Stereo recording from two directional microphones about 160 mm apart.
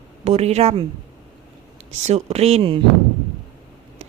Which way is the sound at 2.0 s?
40° right (ahead or behind).